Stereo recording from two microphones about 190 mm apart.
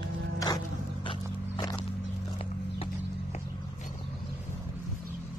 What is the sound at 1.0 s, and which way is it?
Walk, 25° left (ahead or behind).